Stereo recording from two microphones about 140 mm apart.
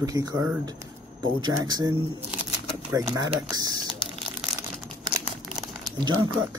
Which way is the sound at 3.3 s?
30° right (ahead or behind).